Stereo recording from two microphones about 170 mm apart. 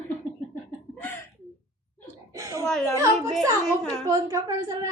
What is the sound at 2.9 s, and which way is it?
A woman's voice, 20° right (ahead or behind).